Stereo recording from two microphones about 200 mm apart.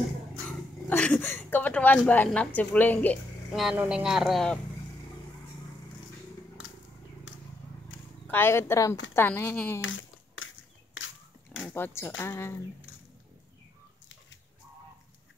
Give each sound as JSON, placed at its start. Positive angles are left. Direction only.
{"t": 0.5, "sound": "speech", "side_deg": 5}
{"t": 8.3, "sound": "speech", "side_deg": 10}
{"t": 9.8, "sound": "a sound", "side_deg": 80}
{"t": 11.0, "sound": "pig", "side_deg": 75}
{"t": 11.7, "sound": "speech", "side_deg": 10}